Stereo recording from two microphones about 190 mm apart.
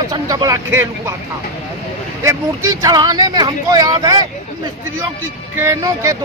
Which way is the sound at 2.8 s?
20° right (ahead or behind).